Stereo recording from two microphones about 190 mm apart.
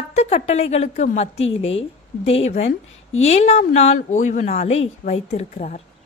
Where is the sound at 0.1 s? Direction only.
35° left (ahead or behind).